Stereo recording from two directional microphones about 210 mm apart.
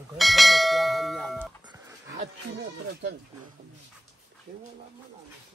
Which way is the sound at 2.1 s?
55° right (ahead or behind).